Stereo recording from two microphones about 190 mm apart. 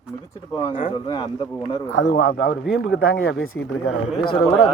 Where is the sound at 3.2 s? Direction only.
90° left.